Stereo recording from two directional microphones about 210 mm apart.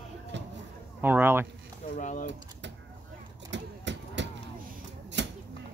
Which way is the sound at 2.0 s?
35° left (ahead or behind).